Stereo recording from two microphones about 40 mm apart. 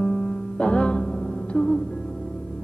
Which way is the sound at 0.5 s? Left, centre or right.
Left.